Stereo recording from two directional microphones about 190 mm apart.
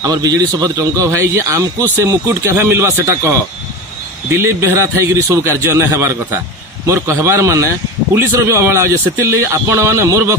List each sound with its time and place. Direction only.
0.0 s a man's voice: 20° right (ahead or behind)